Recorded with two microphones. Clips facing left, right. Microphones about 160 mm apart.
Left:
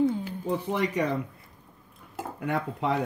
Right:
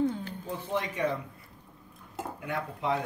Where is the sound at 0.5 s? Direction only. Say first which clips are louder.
Left 5 dB; 65° left (ahead or behind).